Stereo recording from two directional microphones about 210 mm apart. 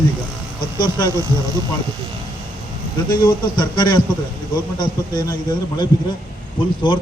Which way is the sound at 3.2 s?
20° left (ahead or behind).